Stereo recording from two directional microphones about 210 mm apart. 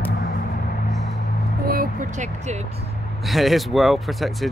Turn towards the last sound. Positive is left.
turn(degrees=0)  # may be behind; listen again after turning